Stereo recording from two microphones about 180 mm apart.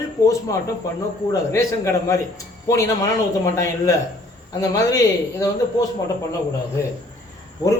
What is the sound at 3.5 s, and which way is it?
A man's voice, 15° left (ahead or behind).